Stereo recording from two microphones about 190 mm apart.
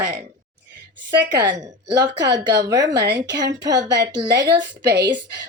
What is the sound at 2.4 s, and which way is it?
Speech, 20° right (ahead or behind).